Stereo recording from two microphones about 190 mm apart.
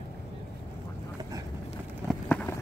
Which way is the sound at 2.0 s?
5° left (ahead or behind).